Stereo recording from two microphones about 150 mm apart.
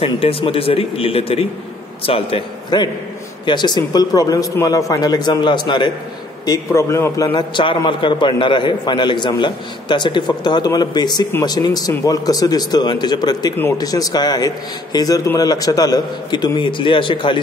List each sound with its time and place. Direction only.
0.0 s a man's voice: 40° left (ahead or behind); by 7.3 s 15° left (ahead or behind)
7.3 s a man's voice: 30° left (ahead or behind)